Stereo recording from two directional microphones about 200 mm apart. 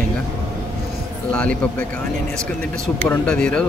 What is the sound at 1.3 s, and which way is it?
Speech, 5° left (ahead or behind).